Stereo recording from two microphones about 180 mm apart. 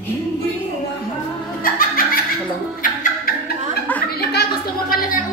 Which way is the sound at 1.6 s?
50° left (ahead or behind).